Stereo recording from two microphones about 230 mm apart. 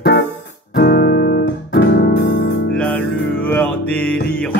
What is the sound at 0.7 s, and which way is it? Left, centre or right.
Music, left.